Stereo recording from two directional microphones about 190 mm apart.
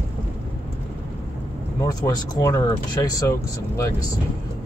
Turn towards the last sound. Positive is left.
turn(degrees=15)  # may be behind; listen again after turning